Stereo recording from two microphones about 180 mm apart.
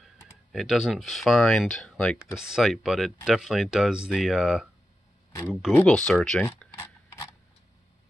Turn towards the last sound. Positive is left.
turn(degrees=15)  # may be behind; listen again after turning